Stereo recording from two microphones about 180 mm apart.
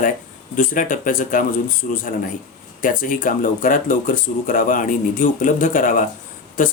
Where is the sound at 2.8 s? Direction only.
50° left (ahead or behind).